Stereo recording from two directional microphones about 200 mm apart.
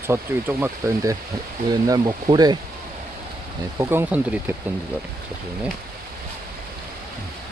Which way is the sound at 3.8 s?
10° right (ahead or behind).